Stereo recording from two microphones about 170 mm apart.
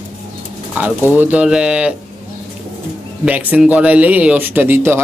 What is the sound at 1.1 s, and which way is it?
Speech, 10° right (ahead or behind).